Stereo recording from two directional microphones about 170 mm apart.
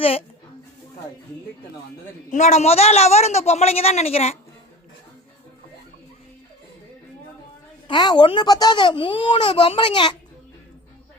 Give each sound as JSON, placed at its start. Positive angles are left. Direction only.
{"t": 0.0, "sound": "a woman's voice", "side_deg": 35}
{"t": 2.3, "sound": "a woman's voice", "side_deg": 45}
{"t": 7.9, "sound": "a child's voice", "side_deg": 25}